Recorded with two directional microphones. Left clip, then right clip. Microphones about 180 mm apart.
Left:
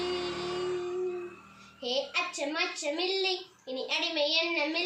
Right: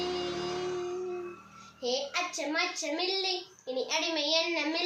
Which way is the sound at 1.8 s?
15° right (ahead or behind).